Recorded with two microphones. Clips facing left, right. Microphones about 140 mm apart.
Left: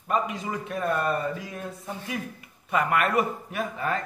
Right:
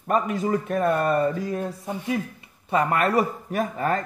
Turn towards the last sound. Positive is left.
turn(degrees=-40)  # may be behind; listen again after turning